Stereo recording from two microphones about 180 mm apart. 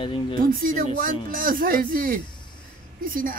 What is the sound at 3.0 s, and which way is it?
Speech, 50° right (ahead or behind).